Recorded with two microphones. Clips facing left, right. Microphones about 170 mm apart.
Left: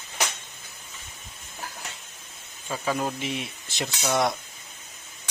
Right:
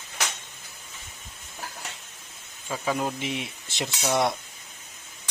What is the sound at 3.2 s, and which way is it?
Speech, 15° right (ahead or behind).